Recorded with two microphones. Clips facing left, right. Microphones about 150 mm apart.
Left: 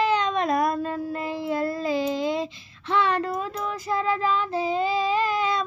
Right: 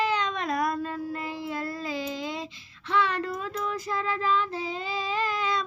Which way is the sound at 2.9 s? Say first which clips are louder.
Left 3 dB; 25° left (ahead or behind).